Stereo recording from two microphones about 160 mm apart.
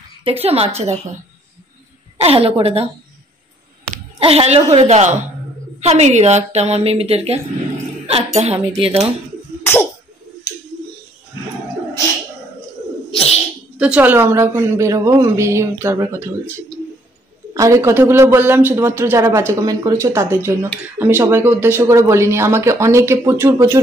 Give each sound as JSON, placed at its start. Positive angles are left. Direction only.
{"t": 0.2, "sound": "speech", "side_deg": -35}
{"t": 2.2, "sound": "speech", "side_deg": -35}
{"t": 4.2, "sound": "a woman's voice", "side_deg": -40}
{"t": 9.6, "sound": "sneeze", "side_deg": 15}
{"t": 13.1, "sound": "bird", "side_deg": 40}
{"t": 13.7, "sound": "a man's voice", "side_deg": -10}
{"t": 17.6, "sound": "a man's voice", "side_deg": -20}